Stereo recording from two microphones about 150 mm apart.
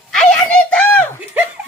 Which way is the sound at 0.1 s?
5° left (ahead or behind).